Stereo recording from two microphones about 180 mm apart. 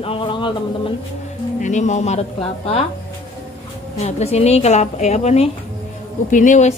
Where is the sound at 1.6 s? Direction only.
40° left (ahead or behind).